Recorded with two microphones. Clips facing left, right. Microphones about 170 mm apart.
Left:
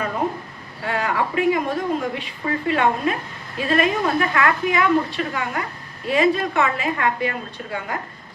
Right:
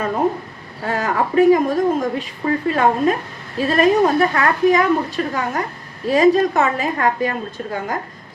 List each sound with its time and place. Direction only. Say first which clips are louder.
0.9 s a woman's voice: right 3 dB; 40° right (ahead or behind)